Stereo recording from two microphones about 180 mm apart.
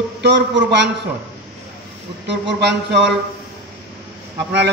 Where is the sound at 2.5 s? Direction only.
70° right (ahead or behind).